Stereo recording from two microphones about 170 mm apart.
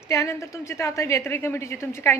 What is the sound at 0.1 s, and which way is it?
A woman's voice, 15° left (ahead or behind).